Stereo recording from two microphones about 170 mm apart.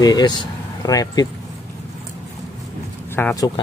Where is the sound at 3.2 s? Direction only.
10° left (ahead or behind).